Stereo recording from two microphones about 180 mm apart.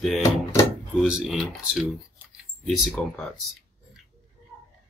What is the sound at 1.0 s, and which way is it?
Speech, 5° right (ahead or behind).